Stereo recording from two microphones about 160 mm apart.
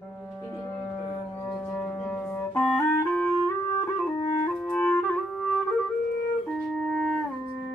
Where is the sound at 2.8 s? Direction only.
10° left (ahead or behind).